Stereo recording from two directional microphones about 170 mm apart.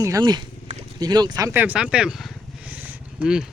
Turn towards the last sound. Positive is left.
turn(degrees=-5)  # may be behind; listen again after turning